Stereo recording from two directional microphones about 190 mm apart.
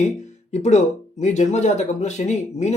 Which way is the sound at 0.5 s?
40° left (ahead or behind).